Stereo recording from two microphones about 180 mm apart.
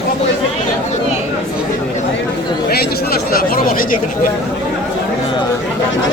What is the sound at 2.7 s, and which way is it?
Speech, 60° left (ahead or behind).